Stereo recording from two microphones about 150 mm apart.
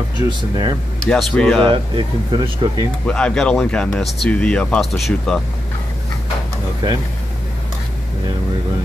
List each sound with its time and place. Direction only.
0.3 s speech: 30° right (ahead or behind)
1.0 s speech: 5° left (ahead or behind)
1.7 s speech: 35° right (ahead or behind)
3.1 s speech: 5° left (ahead or behind)